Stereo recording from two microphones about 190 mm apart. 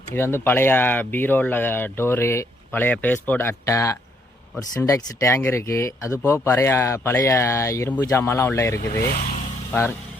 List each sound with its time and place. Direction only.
0.1 s speech: 15° left (ahead or behind)
9.0 s speech: 55° left (ahead or behind)